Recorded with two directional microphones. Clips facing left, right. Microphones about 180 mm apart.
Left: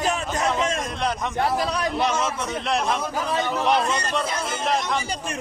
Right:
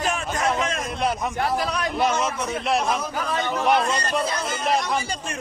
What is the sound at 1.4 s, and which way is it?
Speech, 35° left (ahead or behind).